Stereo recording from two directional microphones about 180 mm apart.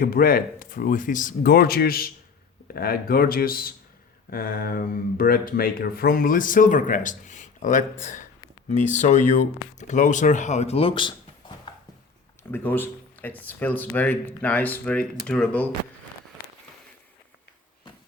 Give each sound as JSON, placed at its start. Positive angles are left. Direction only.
{"t": 0.0, "sound": "speech", "side_deg": 55}
{"t": 11.7, "sound": "a sound", "side_deg": 25}
{"t": 12.4, "sound": "speech", "side_deg": 10}